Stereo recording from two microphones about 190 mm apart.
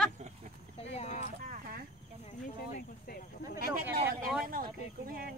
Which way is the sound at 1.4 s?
50° right (ahead or behind).